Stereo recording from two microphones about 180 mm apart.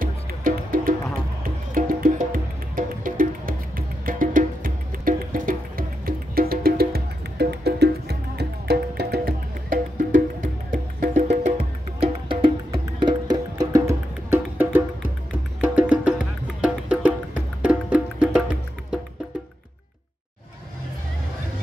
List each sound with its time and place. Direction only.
0.0 s music: 50° right (ahead or behind); by 18.9 s 5° right (ahead or behind)